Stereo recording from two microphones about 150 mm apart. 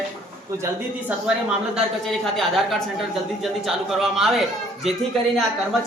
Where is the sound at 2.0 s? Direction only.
Centre (ahead or behind).